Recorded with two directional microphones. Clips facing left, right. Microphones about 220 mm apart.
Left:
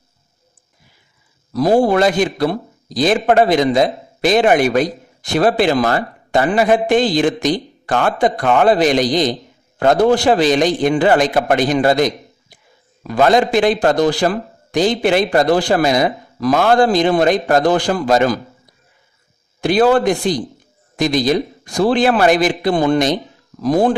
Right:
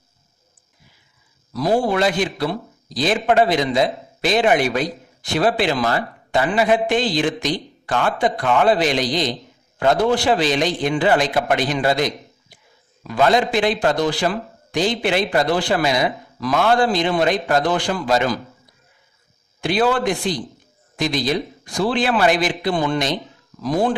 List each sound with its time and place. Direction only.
1.5 s a man's voice: 45° left (ahead or behind)
19.6 s a man's voice: 40° left (ahead or behind)